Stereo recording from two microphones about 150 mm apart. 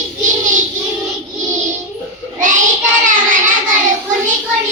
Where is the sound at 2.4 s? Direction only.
60° right (ahead or behind).